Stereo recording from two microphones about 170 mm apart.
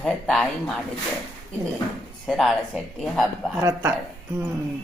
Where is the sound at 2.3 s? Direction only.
Centre (ahead or behind).